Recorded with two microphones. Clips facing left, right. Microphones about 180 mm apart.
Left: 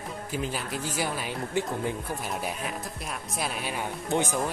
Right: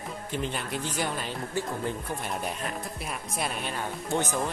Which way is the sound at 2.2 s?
5° left (ahead or behind).